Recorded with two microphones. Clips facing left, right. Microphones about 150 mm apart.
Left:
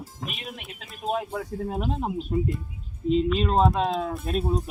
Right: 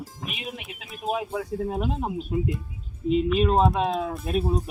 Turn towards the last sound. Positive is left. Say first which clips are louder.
# right 1 dB
turn(degrees=0)  # may be behind; listen again after turning